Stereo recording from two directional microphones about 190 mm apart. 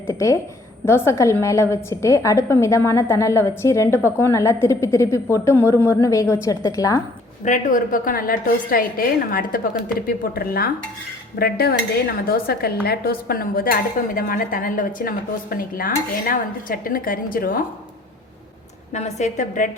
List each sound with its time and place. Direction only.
0.1 s a woman's voice: 15° left (ahead or behind)
7.4 s speech: 40° left (ahead or behind)
18.9 s a woman's voice: 40° left (ahead or behind)